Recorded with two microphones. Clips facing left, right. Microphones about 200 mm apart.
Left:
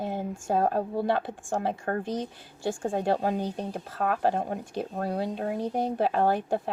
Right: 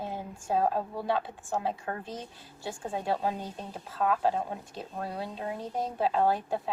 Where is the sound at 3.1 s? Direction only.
55° left (ahead or behind).